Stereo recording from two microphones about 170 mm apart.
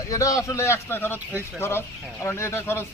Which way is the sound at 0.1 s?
20° left (ahead or behind).